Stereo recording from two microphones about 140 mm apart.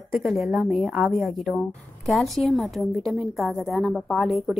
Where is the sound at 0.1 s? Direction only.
Centre (ahead or behind).